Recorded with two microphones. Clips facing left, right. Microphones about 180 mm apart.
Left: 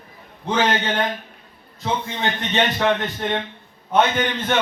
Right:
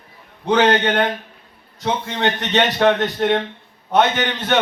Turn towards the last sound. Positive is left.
turn(degrees=-75)  # may be behind; listen again after turning